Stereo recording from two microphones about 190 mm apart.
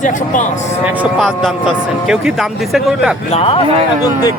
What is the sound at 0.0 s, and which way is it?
Speech, 40° left (ahead or behind).